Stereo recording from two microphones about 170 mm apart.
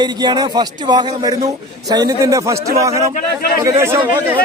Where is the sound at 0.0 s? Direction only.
25° right (ahead or behind).